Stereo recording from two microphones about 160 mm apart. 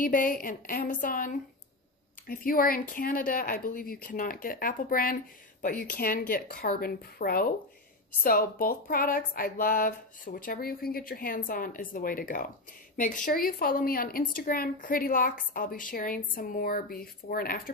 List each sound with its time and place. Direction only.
0.0 s speech: 60° left (ahead or behind)